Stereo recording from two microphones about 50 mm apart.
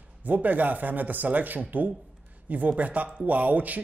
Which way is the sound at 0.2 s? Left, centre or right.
Right.